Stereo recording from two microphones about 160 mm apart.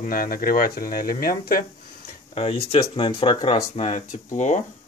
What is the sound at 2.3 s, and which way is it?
Speech, 35° left (ahead or behind).